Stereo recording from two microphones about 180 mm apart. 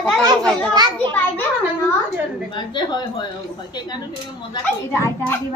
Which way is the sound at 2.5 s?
25° left (ahead or behind).